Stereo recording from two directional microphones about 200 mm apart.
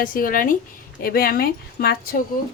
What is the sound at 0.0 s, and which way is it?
A woman's voice, 45° left (ahead or behind).